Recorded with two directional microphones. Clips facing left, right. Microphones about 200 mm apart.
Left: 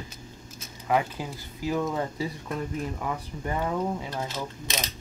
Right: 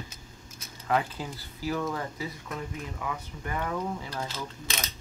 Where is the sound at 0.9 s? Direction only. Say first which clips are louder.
Left 2 dB; 15° left (ahead or behind).